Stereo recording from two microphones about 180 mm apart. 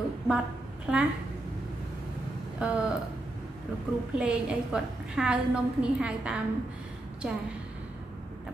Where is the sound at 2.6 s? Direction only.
5° right (ahead or behind).